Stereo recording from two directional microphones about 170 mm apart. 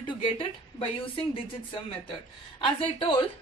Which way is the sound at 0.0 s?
30° left (ahead or behind).